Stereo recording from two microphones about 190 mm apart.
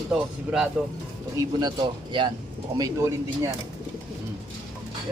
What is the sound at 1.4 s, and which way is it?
Speech, 20° right (ahead or behind).